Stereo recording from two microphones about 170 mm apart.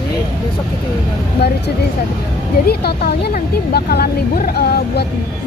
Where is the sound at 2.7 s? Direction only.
65° left (ahead or behind).